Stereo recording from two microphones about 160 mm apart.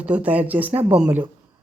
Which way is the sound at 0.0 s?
10° right (ahead or behind).